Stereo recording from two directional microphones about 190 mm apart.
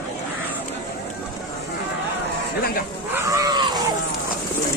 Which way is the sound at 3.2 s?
20° right (ahead or behind).